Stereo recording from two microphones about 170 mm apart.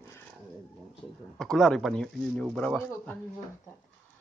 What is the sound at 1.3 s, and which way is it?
Speech, centre (ahead or behind).